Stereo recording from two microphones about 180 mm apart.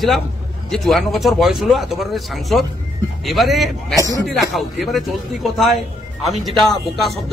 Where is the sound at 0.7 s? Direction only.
Centre (ahead or behind).